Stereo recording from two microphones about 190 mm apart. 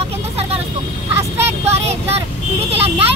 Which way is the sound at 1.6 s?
35° right (ahead or behind).